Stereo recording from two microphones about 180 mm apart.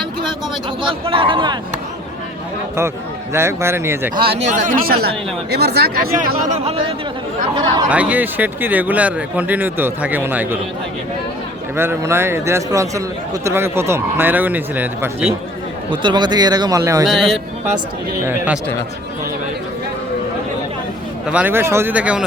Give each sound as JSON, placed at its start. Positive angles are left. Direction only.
{"t": 0.8, "sound": "a man's voice", "side_deg": -30}
{"t": 3.3, "sound": "a man's voice", "side_deg": -15}
{"t": 4.1, "sound": "speech", "side_deg": -30}
{"t": 7.9, "sound": "a man's voice", "side_deg": -10}
{"t": 11.8, "sound": "a man's voice", "side_deg": -15}
{"t": 15.9, "sound": "a man's voice", "side_deg": -25}
{"t": 17.1, "sound": "a man's voice", "side_deg": 0}
{"t": 21.2, "sound": "a man's voice", "side_deg": -10}